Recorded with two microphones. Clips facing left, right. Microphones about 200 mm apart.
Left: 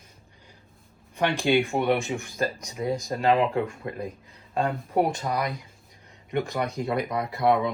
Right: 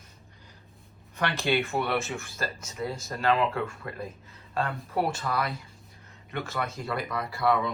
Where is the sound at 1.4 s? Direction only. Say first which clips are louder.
Left 4 dB; 15° left (ahead or behind).